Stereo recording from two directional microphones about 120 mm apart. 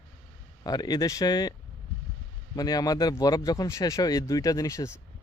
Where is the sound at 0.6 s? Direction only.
35° left (ahead or behind).